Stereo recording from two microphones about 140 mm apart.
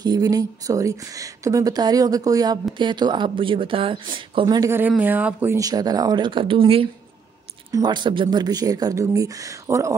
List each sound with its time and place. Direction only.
0.0 s speech: 30° right (ahead or behind)
4.6 s speech: 15° right (ahead or behind)
5.6 s speech: 25° right (ahead or behind)